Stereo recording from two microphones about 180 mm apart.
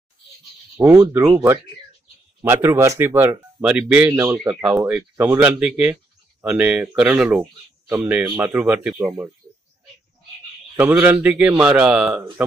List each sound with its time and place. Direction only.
0.7 s speech: 15° right (ahead or behind)
10.8 s speech: 10° right (ahead or behind)